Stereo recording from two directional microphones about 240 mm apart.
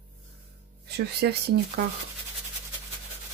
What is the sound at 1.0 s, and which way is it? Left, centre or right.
Speech, right.